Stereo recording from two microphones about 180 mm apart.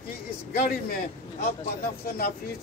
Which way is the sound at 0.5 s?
50° left (ahead or behind).